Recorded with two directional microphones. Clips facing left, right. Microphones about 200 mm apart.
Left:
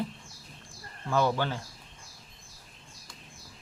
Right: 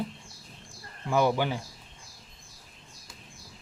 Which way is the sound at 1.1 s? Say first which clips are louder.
Right 2 dB; 15° right (ahead or behind).